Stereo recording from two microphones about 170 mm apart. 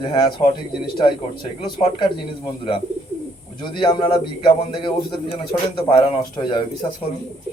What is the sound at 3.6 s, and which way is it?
A man's voice, 30° left (ahead or behind).